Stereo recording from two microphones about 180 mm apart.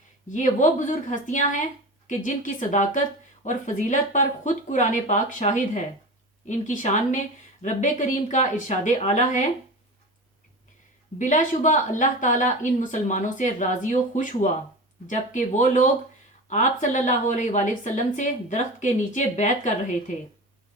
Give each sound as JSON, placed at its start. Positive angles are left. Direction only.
{"t": 0.3, "sound": "a woman's voice", "side_deg": 45}
{"t": 11.2, "sound": "a woman's voice", "side_deg": 45}